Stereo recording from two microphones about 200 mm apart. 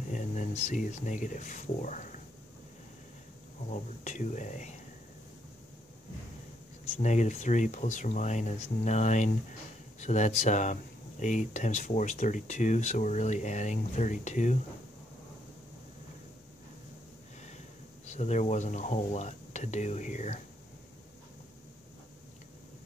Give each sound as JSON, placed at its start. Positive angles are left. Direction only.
{"t": 0.1, "sound": "speech", "side_deg": 40}
{"t": 3.7, "sound": "speech", "side_deg": 35}
{"t": 7.0, "sound": "speech", "side_deg": 35}
{"t": 18.0, "sound": "speech", "side_deg": 35}